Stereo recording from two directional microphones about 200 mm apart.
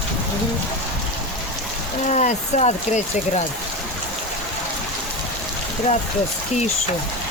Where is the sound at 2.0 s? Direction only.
35° left (ahead or behind).